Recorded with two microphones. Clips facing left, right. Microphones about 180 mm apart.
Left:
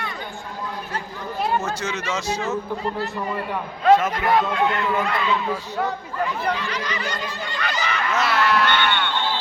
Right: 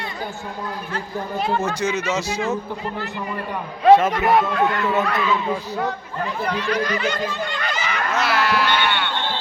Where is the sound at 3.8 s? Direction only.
30° right (ahead or behind).